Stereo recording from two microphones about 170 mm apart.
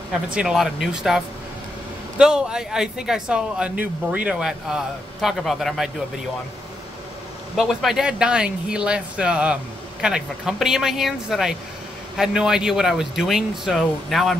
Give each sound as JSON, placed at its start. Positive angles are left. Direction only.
{"t": 0.3, "sound": "speech", "side_deg": -5}
{"t": 7.5, "sound": "speech", "side_deg": 0}